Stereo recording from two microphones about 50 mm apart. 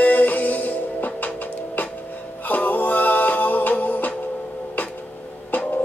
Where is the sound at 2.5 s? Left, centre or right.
Left.